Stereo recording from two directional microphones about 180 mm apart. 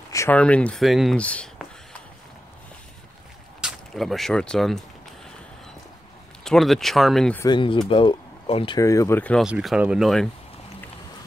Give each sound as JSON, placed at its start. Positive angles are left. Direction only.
{"t": 0.1, "sound": "speech", "side_deg": 10}
{"t": 3.6, "sound": "speech", "side_deg": 0}
{"t": 6.4, "sound": "speech", "side_deg": 0}
{"t": 7.4, "sound": "speech", "side_deg": 25}
{"t": 8.7, "sound": "speech", "side_deg": 15}
{"t": 9.5, "sound": "speech", "side_deg": -5}